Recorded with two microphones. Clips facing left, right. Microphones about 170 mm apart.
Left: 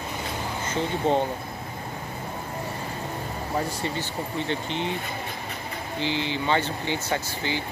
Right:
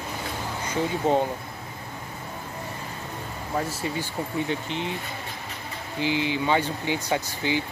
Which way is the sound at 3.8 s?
5° right (ahead or behind).